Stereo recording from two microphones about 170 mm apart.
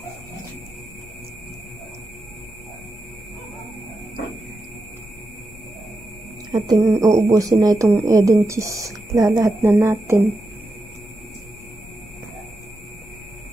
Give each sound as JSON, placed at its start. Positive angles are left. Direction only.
{"t": 6.5, "sound": "a woman's voice", "side_deg": -25}